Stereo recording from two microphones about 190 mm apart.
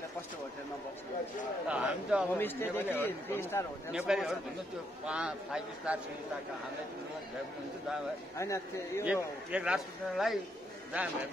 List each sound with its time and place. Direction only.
1.7 s a man's voice: 5° right (ahead or behind)
2.3 s a man's voice: 10° left (ahead or behind)
3.9 s a man's voice: 5° right (ahead or behind)
8.4 s a man's voice: 15° left (ahead or behind)
9.0 s speech: 5° right (ahead or behind)